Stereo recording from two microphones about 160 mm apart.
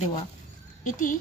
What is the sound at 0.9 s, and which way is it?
Speech, 55° left (ahead or behind).